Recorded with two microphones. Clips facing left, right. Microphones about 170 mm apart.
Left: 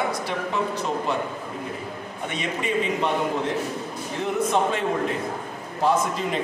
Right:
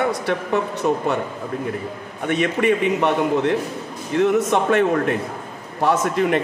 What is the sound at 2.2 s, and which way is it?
A man's voice, 65° right (ahead or behind).